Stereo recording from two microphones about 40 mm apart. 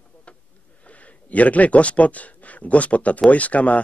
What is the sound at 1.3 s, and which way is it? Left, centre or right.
Speech, left.